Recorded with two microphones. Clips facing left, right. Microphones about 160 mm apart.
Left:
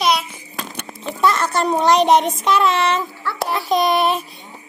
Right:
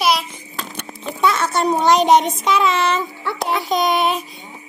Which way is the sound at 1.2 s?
Centre (ahead or behind).